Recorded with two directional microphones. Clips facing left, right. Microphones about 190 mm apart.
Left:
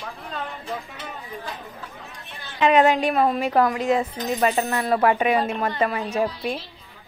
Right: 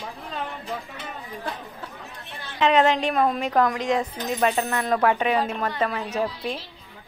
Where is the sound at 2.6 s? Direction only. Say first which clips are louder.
Left 2 dB; 10° left (ahead or behind).